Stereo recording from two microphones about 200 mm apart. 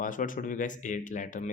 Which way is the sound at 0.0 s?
40° left (ahead or behind).